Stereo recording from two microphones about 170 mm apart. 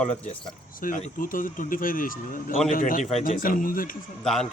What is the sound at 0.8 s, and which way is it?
Speech, 55° left (ahead or behind).